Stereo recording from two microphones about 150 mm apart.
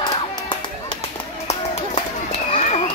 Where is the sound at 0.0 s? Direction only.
30° left (ahead or behind).